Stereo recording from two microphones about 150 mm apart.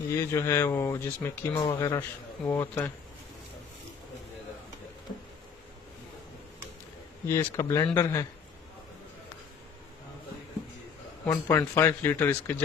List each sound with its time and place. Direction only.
0.1 s speech: 20° left (ahead or behind)
7.2 s speech: 15° left (ahead or behind)
11.2 s speech: 15° left (ahead or behind)